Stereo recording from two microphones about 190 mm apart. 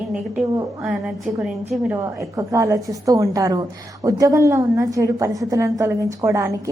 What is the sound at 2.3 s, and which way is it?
A woman's voice, 15° right (ahead or behind).